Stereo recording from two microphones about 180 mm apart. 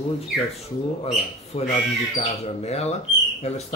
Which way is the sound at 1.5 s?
30° left (ahead or behind).